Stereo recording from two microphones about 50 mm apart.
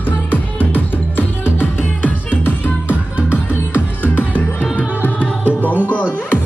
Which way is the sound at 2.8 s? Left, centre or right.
Right.